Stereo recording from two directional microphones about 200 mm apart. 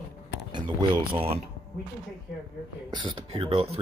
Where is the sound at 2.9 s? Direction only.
25° right (ahead or behind).